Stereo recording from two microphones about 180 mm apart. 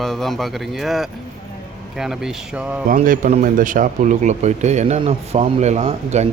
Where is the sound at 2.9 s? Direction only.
50° right (ahead or behind).